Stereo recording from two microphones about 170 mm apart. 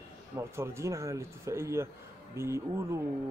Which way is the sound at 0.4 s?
15° right (ahead or behind).